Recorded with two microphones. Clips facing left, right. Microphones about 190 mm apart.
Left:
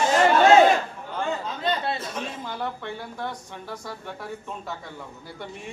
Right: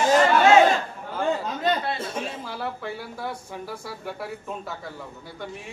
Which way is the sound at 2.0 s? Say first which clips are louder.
Right 2 dB; 30° right (ahead or behind).